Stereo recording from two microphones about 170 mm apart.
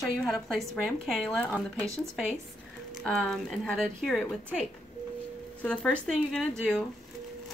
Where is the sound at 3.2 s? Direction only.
5° left (ahead or behind).